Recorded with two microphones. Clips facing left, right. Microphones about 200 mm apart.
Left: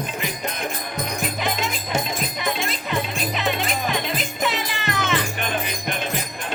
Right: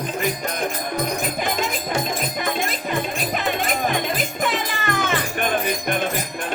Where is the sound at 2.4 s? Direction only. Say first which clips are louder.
Right 2 dB; 45° right (ahead or behind).